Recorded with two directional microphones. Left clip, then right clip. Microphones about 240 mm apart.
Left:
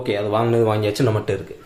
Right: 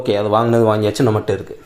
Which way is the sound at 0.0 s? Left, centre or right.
Centre.